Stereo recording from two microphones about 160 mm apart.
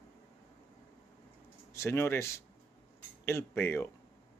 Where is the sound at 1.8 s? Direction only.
15° left (ahead or behind).